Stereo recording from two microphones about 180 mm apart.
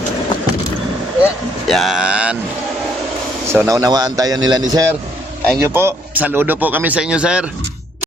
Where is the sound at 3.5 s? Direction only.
15° right (ahead or behind).